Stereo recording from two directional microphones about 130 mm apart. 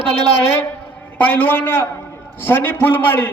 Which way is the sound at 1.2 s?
15° left (ahead or behind).